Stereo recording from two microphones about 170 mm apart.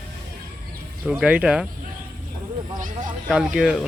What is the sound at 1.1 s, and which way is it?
Speech, 5° right (ahead or behind).